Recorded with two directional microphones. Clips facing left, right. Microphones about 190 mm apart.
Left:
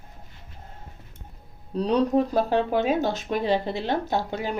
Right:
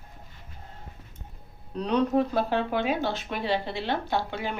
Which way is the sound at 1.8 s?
35° left (ahead or behind).